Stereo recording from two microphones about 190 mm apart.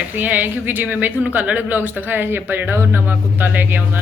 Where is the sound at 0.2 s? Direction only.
10° right (ahead or behind).